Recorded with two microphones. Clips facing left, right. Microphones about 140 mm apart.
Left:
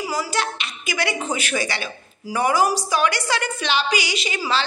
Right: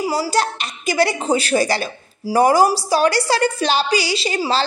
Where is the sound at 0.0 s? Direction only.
30° right (ahead or behind).